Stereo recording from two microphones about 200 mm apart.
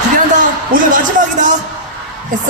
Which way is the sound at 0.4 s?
40° right (ahead or behind).